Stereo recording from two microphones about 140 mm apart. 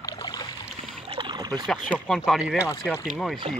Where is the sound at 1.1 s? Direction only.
30° right (ahead or behind).